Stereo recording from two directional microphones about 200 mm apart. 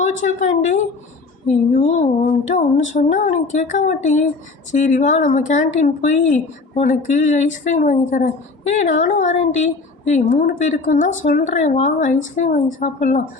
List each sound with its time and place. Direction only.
0.0 s a woman's voice: 40° left (ahead or behind)
1.8 s speech: 35° left (ahead or behind)